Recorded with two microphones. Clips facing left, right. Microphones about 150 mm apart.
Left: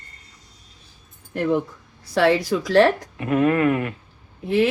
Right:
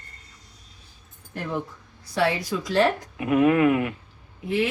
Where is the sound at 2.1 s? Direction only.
75° left (ahead or behind).